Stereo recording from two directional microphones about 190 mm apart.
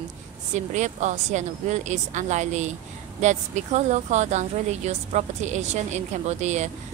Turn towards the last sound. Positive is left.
turn(degrees=-35)  # may be behind; listen again after turning